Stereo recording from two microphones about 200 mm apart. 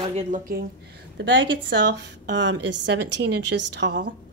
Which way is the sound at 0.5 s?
50° right (ahead or behind).